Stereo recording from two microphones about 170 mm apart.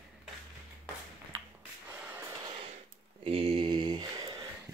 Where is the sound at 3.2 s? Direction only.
35° right (ahead or behind).